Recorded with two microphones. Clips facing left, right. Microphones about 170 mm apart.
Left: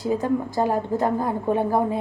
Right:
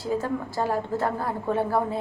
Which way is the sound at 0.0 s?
15° left (ahead or behind).